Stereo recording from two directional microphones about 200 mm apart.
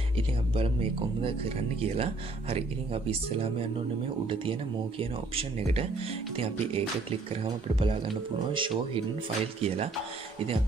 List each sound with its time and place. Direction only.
2.5 s speech: 30° right (ahead or behind)
8.5 s speech: 25° right (ahead or behind)